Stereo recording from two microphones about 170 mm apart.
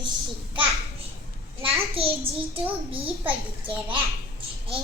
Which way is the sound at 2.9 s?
30° right (ahead or behind).